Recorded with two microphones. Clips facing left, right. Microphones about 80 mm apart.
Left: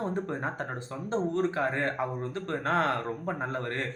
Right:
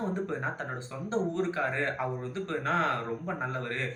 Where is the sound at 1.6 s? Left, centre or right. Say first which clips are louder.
Left 2 dB; left.